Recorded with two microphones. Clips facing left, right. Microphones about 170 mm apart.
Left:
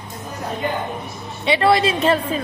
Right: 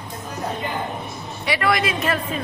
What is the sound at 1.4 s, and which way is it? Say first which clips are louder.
Speech: left 5 dB; 25° left (ahead or behind).